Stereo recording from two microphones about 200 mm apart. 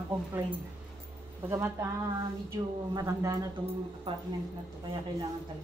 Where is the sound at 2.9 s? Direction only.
15° right (ahead or behind).